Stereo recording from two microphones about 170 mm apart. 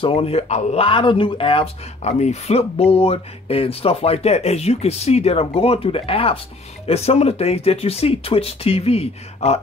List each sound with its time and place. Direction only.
0.0 s speech: 35° left (ahead or behind)